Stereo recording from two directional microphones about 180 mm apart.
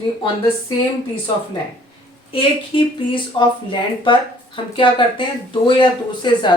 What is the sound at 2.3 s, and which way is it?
Speech, 30° left (ahead or behind).